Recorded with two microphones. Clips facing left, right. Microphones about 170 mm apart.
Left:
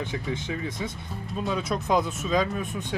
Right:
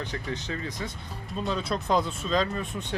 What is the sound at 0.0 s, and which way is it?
Speech, 15° left (ahead or behind).